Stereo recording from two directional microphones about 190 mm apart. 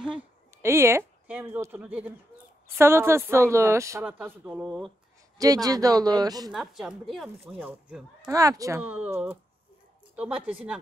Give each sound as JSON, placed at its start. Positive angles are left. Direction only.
{"t": 0.0, "sound": "speech", "side_deg": -10}
{"t": 5.4, "sound": "speech", "side_deg": -20}
{"t": 6.5, "sound": "speech", "side_deg": 0}